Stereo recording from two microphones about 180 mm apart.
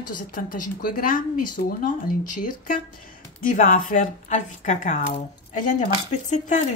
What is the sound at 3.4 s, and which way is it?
Speech, 50° left (ahead or behind).